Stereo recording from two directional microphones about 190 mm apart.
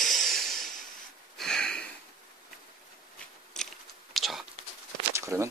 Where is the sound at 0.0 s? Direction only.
Centre (ahead or behind).